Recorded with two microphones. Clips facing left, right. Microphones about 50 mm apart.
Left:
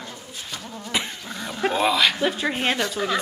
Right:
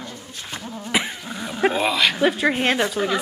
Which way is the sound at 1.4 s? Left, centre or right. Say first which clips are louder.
Right 1 dB; centre.